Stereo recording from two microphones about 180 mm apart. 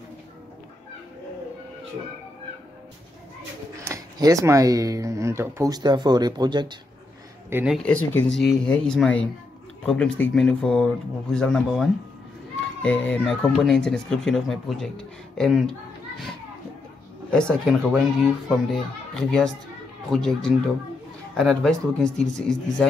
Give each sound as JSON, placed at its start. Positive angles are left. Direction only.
{"t": 3.8, "sound": "speech", "side_deg": -15}
{"t": 7.4, "sound": "speech", "side_deg": -10}
{"t": 7.7, "sound": "speech", "side_deg": 5}
{"t": 17.3, "sound": "speech", "side_deg": 5}